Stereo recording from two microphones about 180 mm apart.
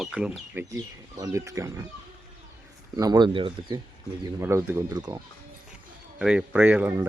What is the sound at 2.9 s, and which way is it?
Speech, 20° right (ahead or behind).